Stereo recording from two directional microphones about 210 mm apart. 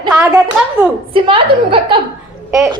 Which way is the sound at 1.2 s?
25° right (ahead or behind).